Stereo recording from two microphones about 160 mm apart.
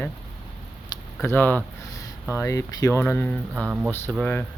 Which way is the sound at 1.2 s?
10° left (ahead or behind).